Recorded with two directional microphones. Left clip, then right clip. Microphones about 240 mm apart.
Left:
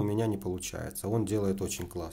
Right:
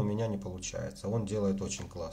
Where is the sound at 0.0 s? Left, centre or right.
Left.